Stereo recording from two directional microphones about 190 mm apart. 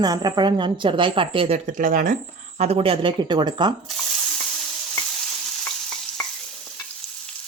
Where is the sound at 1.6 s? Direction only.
45° right (ahead or behind).